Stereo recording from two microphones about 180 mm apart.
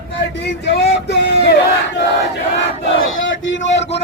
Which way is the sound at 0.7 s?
70° left (ahead or behind).